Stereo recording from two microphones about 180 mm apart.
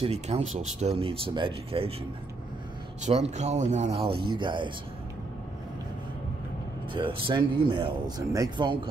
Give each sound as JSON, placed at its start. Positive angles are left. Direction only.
{"t": 0.0, "sound": "speech", "side_deg": -35}
{"t": 3.1, "sound": "speech", "side_deg": -40}
{"t": 6.9, "sound": "speech", "side_deg": -30}